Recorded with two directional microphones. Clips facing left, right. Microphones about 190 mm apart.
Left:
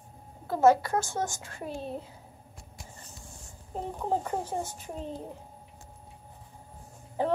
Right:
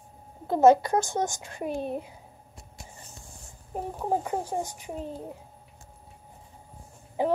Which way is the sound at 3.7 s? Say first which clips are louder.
Right 2 dB; 10° right (ahead or behind).